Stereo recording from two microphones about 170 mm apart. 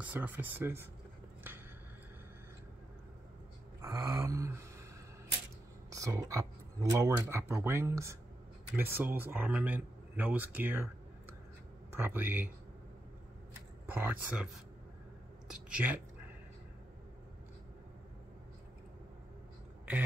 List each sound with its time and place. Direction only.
0.0 s speech: 10° right (ahead or behind)
3.8 s a sound: 20° right (ahead or behind)
5.9 s speech: 20° right (ahead or behind)
11.9 s speech: 15° right (ahead or behind)
13.8 s speech: 10° right (ahead or behind)
15.4 s a sound: 5° right (ahead or behind)